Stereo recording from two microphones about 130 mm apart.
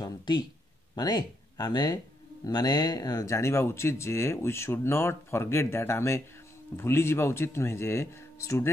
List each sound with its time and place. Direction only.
0.0 s speech: 35° left (ahead or behind)